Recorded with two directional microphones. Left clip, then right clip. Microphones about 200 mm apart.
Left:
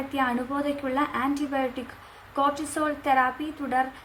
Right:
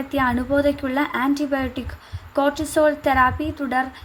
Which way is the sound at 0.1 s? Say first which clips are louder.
Right 7 dB; 25° right (ahead or behind).